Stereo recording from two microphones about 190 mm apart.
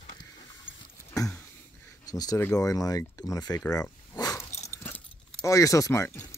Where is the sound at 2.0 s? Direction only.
20° left (ahead or behind).